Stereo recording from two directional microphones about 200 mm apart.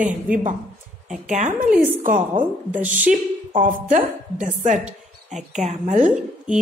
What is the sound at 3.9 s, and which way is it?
A woman's voice, 35° right (ahead or behind).